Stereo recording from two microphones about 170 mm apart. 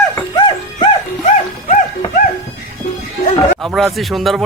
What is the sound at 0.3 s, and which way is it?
Music, 25° left (ahead or behind).